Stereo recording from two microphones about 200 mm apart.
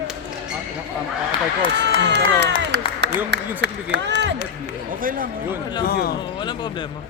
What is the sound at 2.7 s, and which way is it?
Music, 60° right (ahead or behind).